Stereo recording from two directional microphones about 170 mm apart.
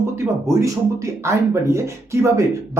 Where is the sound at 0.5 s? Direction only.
15° right (ahead or behind).